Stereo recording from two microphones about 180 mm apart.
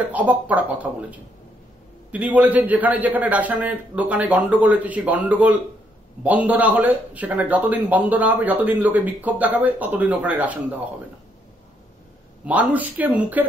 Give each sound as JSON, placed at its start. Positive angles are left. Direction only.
{"t": 0.1, "sound": "speech", "side_deg": -10}
{"t": 2.0, "sound": "speech", "side_deg": -10}
{"t": 12.4, "sound": "speech", "side_deg": -10}